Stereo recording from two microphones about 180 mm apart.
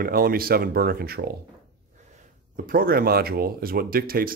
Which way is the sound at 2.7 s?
55° right (ahead or behind).